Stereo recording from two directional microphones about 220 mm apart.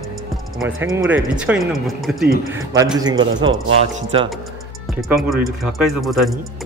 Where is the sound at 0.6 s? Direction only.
15° right (ahead or behind).